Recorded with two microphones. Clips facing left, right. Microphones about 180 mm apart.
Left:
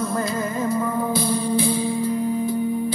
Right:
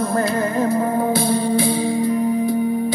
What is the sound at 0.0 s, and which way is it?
Music, 65° right (ahead or behind).